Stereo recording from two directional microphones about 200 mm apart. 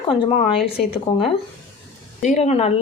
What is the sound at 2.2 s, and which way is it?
Speech, 35° left (ahead or behind).